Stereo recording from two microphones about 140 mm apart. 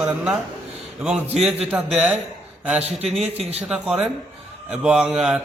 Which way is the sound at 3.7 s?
5° right (ahead or behind).